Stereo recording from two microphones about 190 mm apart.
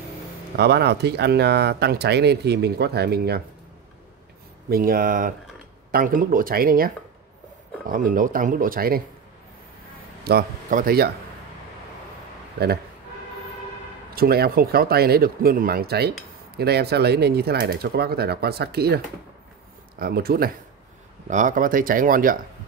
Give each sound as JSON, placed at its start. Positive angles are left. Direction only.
{"t": 0.6, "sound": "speech", "side_deg": -60}
{"t": 4.6, "sound": "speech", "side_deg": -50}
{"t": 10.2, "sound": "speech", "side_deg": -50}
{"t": 14.1, "sound": "speech", "side_deg": -55}
{"t": 20.0, "sound": "speech", "side_deg": -50}
{"t": 21.3, "sound": "speech", "side_deg": -40}